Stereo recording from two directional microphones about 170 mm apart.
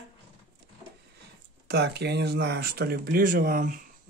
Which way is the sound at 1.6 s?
80° right.